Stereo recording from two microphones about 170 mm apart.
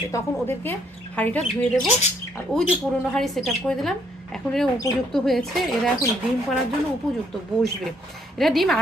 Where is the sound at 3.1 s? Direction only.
Centre (ahead or behind).